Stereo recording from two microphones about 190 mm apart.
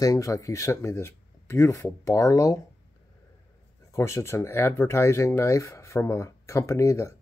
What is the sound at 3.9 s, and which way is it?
Speech, 15° left (ahead or behind).